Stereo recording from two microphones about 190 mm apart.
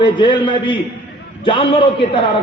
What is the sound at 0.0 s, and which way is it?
Speech, 25° left (ahead or behind).